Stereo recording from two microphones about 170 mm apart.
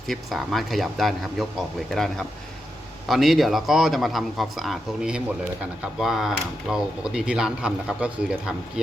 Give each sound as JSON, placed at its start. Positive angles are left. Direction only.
{"t": 0.1, "sound": "speech", "side_deg": 0}